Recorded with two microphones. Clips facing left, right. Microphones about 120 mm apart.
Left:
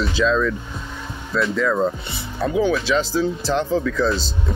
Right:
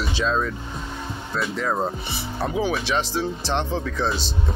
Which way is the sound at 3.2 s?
30° right (ahead or behind).